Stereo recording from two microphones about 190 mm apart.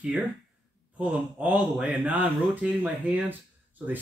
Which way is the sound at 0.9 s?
5° right (ahead or behind).